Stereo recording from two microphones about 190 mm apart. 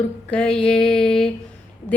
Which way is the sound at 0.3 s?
5° left (ahead or behind).